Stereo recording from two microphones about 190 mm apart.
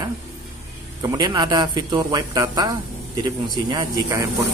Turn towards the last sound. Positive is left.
turn(degrees=-20)  # may be behind; listen again after turning